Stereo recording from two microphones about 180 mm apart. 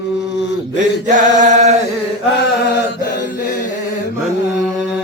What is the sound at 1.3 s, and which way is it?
Chant, 40° right (ahead or behind).